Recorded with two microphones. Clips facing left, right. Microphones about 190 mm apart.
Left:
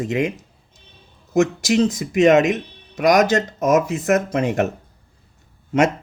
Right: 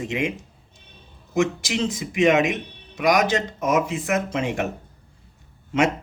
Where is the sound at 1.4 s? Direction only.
40° left (ahead or behind).